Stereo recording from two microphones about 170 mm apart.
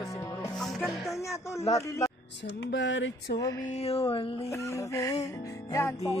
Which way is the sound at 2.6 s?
90° left.